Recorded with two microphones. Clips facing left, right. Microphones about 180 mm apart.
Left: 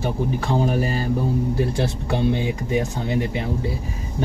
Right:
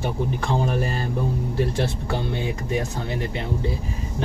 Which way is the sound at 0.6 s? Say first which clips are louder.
Left 3 dB; 5° left (ahead or behind).